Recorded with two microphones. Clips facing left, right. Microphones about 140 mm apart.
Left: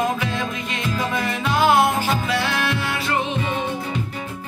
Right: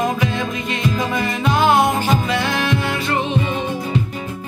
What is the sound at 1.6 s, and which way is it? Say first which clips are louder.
Music: right 1 dB; 5° left (ahead or behind).